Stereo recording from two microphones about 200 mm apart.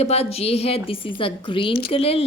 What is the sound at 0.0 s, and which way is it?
A woman's voice, 30° left (ahead or behind).